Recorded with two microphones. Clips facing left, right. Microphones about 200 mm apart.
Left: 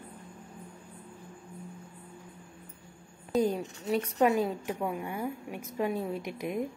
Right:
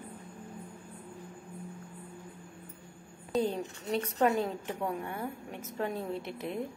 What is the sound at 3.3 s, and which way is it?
Speech, 5° left (ahead or behind).